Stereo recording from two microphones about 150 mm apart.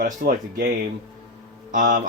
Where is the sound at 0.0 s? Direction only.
70° right (ahead or behind).